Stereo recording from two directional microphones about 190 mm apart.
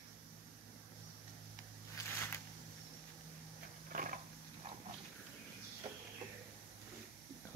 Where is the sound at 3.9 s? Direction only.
45° right (ahead or behind).